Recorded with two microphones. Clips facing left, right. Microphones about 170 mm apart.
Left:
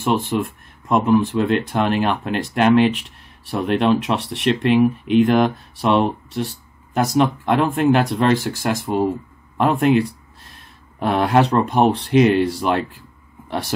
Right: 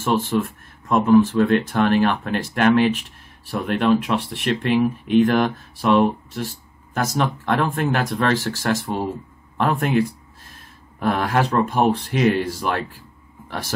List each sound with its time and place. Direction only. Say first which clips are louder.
0.0 s speech: left 1 dB; 15° left (ahead or behind)
9.6 s speech: left 4 dB; 20° left (ahead or behind)